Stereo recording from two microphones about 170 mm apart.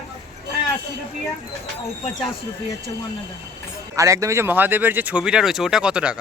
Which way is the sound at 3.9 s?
20° right (ahead or behind).